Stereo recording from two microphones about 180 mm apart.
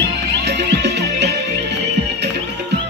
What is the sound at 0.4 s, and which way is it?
Music, 70° right (ahead or behind).